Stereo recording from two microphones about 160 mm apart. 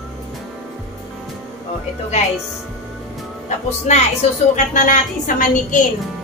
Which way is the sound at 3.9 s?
45° left (ahead or behind).